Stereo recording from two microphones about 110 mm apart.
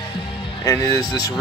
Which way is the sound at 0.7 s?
30° left (ahead or behind).